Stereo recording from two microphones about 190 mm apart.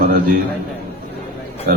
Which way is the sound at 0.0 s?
50° right (ahead or behind).